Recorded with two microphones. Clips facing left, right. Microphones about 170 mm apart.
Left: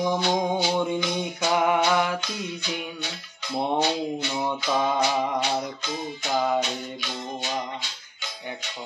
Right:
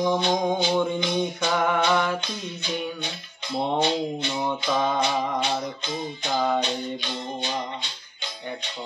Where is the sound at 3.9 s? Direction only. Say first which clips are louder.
Right 1 dB; 30° right (ahead or behind).